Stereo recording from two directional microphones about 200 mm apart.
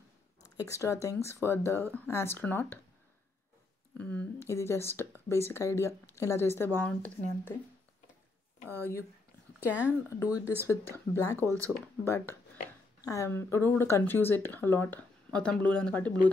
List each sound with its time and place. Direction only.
0.6 s speech: 15° left (ahead or behind)
4.0 s speech: 5° left (ahead or behind)
8.6 s speech: 10° right (ahead or behind)
10.0 s speech: 15° left (ahead or behind)
11.4 s speech: 15° right (ahead or behind)
12.0 s speech: 10° left (ahead or behind)